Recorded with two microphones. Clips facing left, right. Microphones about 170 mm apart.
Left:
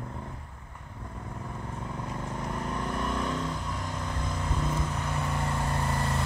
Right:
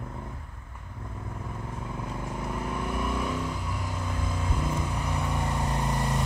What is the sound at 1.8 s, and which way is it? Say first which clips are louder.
Vehicle: right 1 dB; 5° right (ahead or behind).